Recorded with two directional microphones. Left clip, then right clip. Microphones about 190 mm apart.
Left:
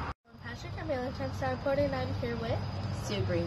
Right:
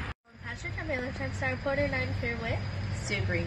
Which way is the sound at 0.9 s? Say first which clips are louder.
Left 1 dB; 10° left (ahead or behind).